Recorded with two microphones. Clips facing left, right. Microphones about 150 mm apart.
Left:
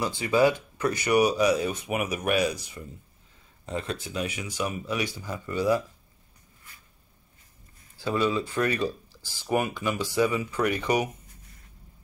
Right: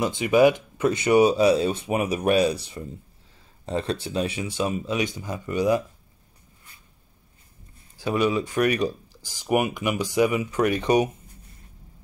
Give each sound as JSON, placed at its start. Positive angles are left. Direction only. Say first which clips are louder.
{"t": 0.0, "sound": "speech", "louder": "right 4 dB", "side_deg": -20}
{"t": 8.0, "sound": "speech", "louder": "right 3 dB", "side_deg": -15}